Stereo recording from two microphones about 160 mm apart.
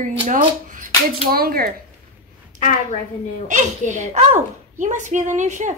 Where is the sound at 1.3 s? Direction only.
65° right (ahead or behind).